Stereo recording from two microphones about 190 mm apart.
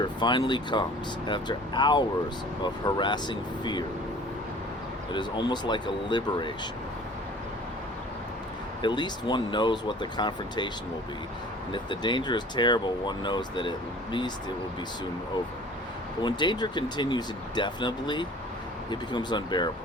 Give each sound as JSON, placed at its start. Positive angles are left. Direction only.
{"t": 0.0, "sound": "speech", "side_deg": 25}
{"t": 5.1, "sound": "speech", "side_deg": 25}
{"t": 8.8, "sound": "speech", "side_deg": 25}
{"t": 11.7, "sound": "speech", "side_deg": 25}
{"t": 16.2, "sound": "speech", "side_deg": 25}